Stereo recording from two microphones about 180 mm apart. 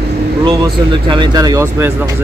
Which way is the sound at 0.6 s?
25° right (ahead or behind).